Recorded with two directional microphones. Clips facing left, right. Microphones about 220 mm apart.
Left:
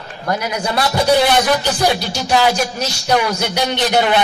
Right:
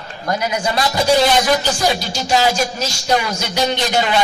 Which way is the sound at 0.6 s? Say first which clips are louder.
Left 2 dB; 60° left (ahead or behind).